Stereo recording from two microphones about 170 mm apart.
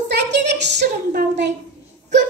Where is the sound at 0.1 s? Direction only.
90° right.